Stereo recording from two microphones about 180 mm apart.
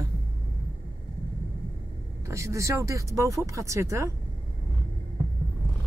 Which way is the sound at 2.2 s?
15° right (ahead or behind).